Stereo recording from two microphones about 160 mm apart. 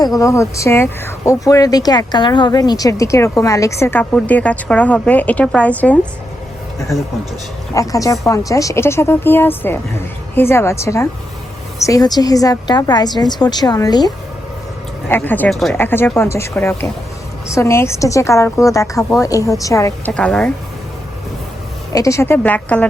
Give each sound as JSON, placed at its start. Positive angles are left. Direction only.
{"t": 0.0, "sound": "speech", "side_deg": 20}
{"t": 7.7, "sound": "a woman's voice", "side_deg": 20}
{"t": 15.1, "sound": "a woman's voice", "side_deg": 10}
{"t": 15.8, "sound": "a woman's voice", "side_deg": 15}
{"t": 20.1, "sound": "a woman's voice", "side_deg": 5}
{"t": 21.9, "sound": "a woman's voice", "side_deg": 20}